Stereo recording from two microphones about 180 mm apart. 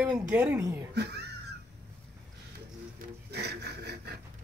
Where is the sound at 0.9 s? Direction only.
65° right (ahead or behind).